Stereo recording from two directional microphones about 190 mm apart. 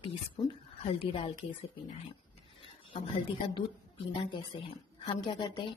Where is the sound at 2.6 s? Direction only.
30° left (ahead or behind).